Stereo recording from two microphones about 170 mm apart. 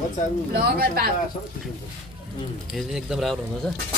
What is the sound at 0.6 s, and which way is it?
Speech, 70° right (ahead or behind).